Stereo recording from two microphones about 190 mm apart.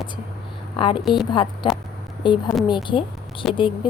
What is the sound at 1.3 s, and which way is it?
A woman's voice, 25° left (ahead or behind).